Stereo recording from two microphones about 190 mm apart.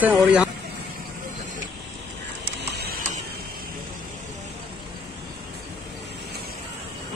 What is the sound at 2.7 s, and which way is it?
Printer, 55° right (ahead or behind).